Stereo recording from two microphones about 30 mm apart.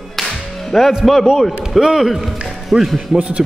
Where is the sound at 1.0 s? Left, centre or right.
Centre.